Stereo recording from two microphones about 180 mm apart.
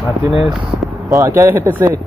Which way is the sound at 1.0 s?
15° right (ahead or behind).